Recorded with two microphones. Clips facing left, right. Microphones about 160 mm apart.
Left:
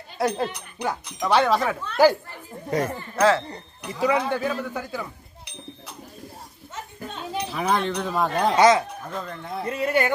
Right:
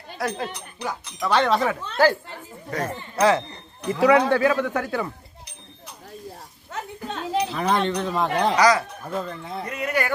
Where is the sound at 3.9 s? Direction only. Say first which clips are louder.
Right 5 dB; 75° right (ahead or behind).